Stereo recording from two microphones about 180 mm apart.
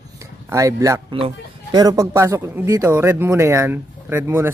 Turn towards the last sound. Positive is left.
turn(degrees=-15)  # may be behind; listen again after turning